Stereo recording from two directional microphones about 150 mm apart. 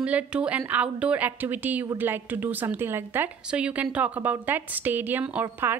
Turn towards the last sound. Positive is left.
turn(degrees=-15)  # may be behind; listen again after turning